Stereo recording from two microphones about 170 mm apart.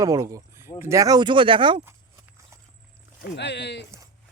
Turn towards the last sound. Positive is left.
turn(degrees=90)